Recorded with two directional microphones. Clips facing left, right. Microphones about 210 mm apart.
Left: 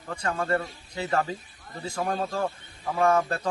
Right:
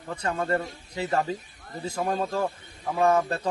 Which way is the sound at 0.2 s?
20° right (ahead or behind).